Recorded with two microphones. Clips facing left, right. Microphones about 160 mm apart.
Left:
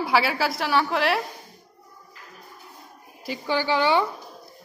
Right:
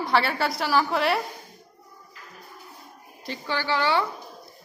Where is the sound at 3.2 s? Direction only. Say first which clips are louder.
Left 4 dB; 10° left (ahead or behind).